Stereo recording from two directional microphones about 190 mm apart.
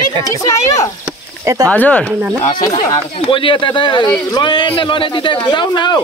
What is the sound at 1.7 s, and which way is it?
Speech, 5° left (ahead or behind).